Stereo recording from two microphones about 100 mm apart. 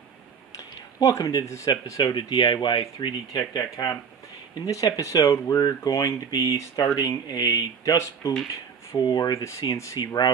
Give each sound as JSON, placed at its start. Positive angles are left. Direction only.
{"t": 0.9, "sound": "speech", "side_deg": 35}
{"t": 2.1, "sound": "speech", "side_deg": 50}